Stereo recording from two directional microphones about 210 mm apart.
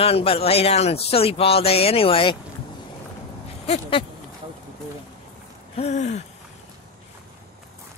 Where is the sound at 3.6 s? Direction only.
30° left (ahead or behind).